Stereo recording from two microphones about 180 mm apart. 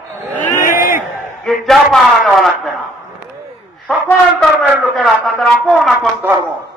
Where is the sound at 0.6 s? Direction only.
50° left (ahead or behind).